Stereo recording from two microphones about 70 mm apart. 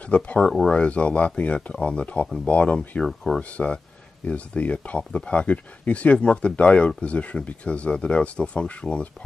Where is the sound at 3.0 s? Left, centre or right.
Centre.